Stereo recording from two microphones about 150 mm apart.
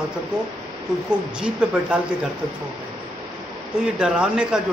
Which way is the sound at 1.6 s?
5° right (ahead or behind).